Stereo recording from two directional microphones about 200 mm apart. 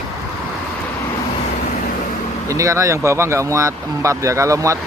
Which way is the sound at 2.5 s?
15° right (ahead or behind).